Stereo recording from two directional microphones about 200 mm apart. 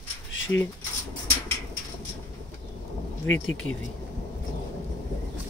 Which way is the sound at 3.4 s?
90° left.